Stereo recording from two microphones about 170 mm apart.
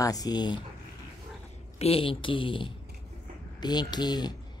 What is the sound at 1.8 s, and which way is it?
Speech, 35° left (ahead or behind).